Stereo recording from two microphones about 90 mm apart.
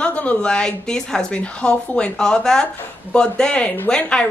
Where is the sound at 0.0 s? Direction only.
15° left (ahead or behind).